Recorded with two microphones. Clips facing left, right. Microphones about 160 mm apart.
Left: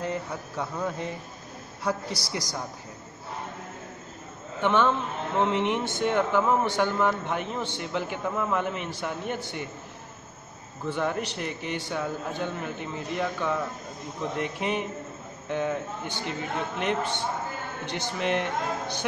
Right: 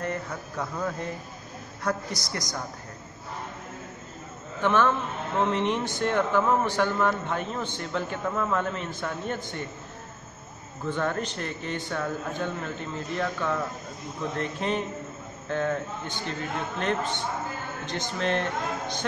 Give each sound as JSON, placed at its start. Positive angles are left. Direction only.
{"t": 0.3, "sound": "speech", "side_deg": 5}
{"t": 2.1, "sound": "a woman's voice", "side_deg": 30}
{"t": 4.6, "sound": "a man's voice", "side_deg": 20}
{"t": 10.9, "sound": "a man's voice", "side_deg": 15}